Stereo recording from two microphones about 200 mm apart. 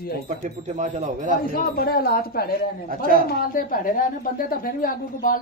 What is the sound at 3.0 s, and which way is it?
Speech, 45° right (ahead or behind).